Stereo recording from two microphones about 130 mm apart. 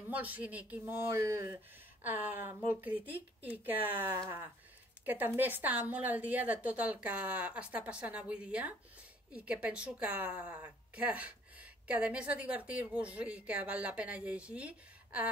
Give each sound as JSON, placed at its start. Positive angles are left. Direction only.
{"t": 0.1, "sound": "a woman's voice", "side_deg": -10}
{"t": 5.0, "sound": "a woman's voice", "side_deg": -15}